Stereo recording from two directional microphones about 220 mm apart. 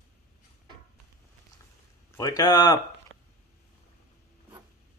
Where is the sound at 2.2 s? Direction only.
15° left (ahead or behind).